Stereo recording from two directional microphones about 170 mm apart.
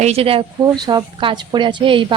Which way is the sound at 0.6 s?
25° right (ahead or behind).